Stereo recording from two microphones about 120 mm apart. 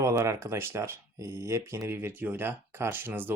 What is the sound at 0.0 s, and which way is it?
Speech, 25° right (ahead or behind).